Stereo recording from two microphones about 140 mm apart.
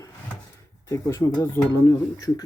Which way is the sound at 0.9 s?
20° left (ahead or behind).